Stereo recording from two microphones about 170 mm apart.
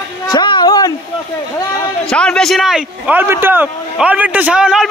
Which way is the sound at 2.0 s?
5° left (ahead or behind).